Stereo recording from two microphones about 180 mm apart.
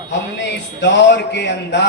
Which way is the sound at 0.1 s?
75° left (ahead or behind).